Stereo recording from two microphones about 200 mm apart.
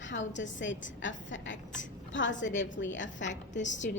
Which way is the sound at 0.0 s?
65° left (ahead or behind).